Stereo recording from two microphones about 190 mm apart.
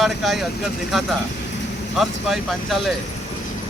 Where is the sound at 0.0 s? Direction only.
Centre (ahead or behind).